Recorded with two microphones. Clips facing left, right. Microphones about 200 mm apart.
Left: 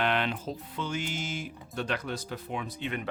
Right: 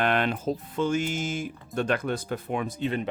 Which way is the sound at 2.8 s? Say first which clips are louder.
Right 7 dB; 30° right (ahead or behind).